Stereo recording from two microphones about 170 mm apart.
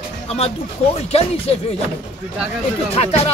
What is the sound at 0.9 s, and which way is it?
Speech, 35° left (ahead or behind).